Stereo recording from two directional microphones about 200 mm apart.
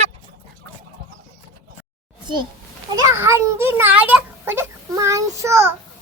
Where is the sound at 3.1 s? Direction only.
15° right (ahead or behind).